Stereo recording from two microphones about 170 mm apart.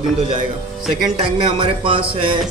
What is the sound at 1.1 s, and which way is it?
Speech, 35° right (ahead or behind).